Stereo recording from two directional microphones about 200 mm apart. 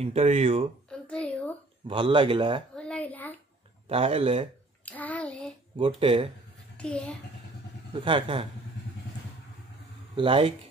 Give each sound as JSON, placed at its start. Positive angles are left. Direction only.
{"t": 0.0, "sound": "speech", "side_deg": -30}
{"t": 0.8, "sound": "a sound", "side_deg": 5}
{"t": 1.9, "sound": "speech", "side_deg": -25}
{"t": 2.7, "sound": "a sound", "side_deg": 5}
{"t": 3.9, "sound": "speech", "side_deg": -30}
{"t": 4.8, "sound": "child singing", "side_deg": 10}
{"t": 5.8, "sound": "speech", "side_deg": -25}
{"t": 6.8, "sound": "a child's voice", "side_deg": 5}
{"t": 7.9, "sound": "speech", "side_deg": -25}
{"t": 10.1, "sound": "speech", "side_deg": -25}